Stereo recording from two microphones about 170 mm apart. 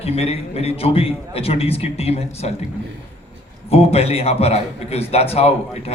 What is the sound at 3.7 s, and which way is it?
A man's voice, 35° left (ahead or behind).